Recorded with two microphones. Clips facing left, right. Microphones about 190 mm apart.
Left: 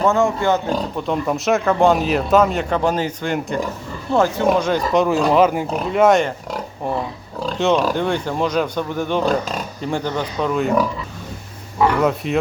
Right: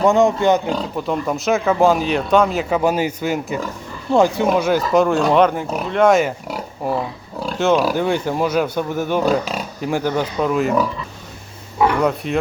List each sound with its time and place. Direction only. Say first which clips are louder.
0.0 s speech: right 3 dB; 15° right (ahead or behind)
0.9 s speech: even; centre (ahead or behind)
11.9 s speech: even; centre (ahead or behind)